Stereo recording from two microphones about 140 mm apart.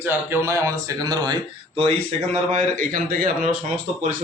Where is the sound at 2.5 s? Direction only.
65° right (ahead or behind).